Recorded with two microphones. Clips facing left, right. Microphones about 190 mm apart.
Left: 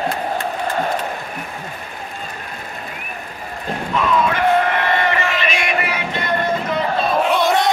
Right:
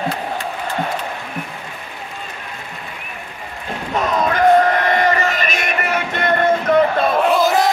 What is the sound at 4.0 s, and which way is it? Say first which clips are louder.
Crowd: right 1 dB; 40° right (ahead or behind).